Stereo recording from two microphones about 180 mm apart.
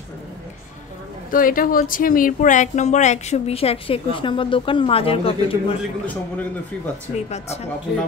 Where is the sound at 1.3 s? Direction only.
50° left (ahead or behind); by 5.3 s 30° left (ahead or behind).